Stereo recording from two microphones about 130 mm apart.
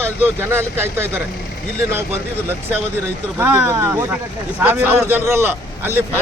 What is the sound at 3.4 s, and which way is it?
A man's voice, 20° right (ahead or behind).